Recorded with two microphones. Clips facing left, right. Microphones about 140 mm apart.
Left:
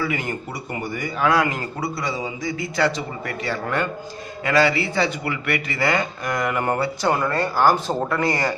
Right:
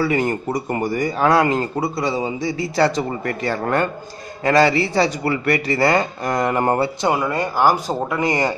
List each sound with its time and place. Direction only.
0.0 s a man's voice: 40° right (ahead or behind)
1.3 s a man's voice: 30° right (ahead or behind)
3.0 s a man's voice: 45° right (ahead or behind)
7.0 s speech: 15° right (ahead or behind)